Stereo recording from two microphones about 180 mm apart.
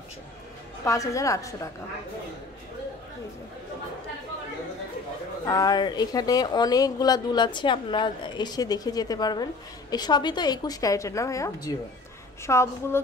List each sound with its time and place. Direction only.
0.8 s a woman's voice: 20° left (ahead or behind)
5.4 s a woman's voice: 20° left (ahead or behind)